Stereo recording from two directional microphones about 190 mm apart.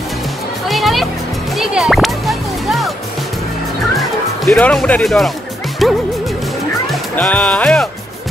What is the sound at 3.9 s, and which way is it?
Music, centre (ahead or behind).